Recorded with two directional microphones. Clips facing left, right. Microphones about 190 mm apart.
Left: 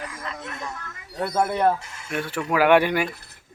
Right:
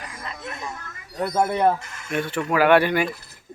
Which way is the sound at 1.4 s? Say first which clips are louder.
Right 1 dB; 15° right (ahead or behind).